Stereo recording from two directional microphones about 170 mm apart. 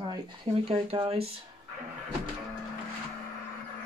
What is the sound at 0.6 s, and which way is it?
Speech, 35° right (ahead or behind).